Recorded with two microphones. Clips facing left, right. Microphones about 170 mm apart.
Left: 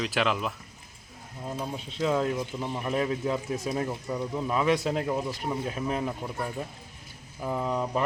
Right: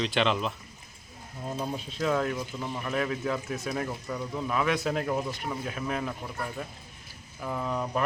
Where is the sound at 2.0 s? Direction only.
20° left (ahead or behind).